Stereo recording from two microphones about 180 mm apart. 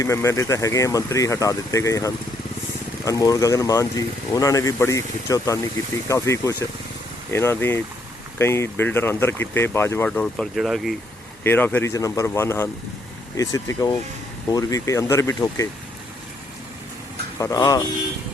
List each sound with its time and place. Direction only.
0.0 s speech: 15° left (ahead or behind); by 10.9 s centre (ahead or behind)
11.4 s speech: 10° left (ahead or behind)
17.4 s speech: 20° left (ahead or behind)